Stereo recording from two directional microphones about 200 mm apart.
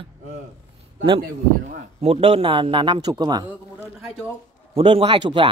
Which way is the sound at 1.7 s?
35° right (ahead or behind).